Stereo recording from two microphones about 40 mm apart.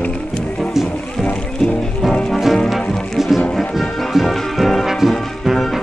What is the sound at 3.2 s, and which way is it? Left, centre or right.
Music, centre.